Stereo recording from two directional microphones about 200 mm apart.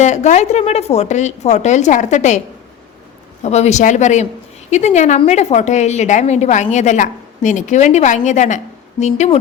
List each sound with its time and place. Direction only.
0.0 s a woman's voice: 35° left (ahead or behind)
3.4 s a woman's voice: 35° left (ahead or behind)